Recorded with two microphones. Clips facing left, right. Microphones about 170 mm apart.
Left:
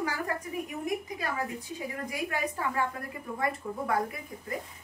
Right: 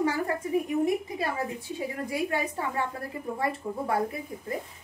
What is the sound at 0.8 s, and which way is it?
Speech, 30° right (ahead or behind).